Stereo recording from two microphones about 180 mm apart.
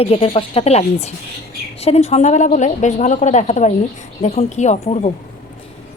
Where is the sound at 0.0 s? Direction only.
30° left (ahead or behind).